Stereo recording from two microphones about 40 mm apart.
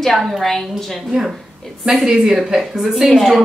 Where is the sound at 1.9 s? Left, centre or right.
Centre.